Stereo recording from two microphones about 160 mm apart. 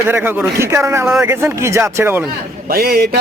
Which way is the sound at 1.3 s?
15° right (ahead or behind).